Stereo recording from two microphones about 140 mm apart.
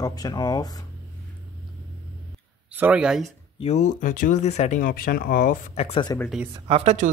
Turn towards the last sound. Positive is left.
turn(degrees=-45)  # may be behind; listen again after turning